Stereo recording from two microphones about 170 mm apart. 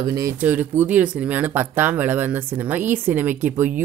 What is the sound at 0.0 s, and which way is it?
A woman's voice, 20° right (ahead or behind).